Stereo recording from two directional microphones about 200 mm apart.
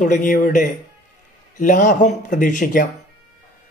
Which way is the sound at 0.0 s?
40° left (ahead or behind).